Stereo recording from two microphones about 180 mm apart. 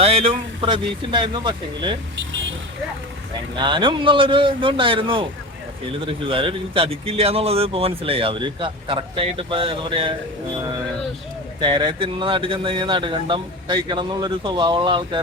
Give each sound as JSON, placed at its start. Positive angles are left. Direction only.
{"t": 0.0, "sound": "speech", "side_deg": -35}
{"t": 3.5, "sound": "a man's voice", "side_deg": -25}
{"t": 11.6, "sound": "speech", "side_deg": -25}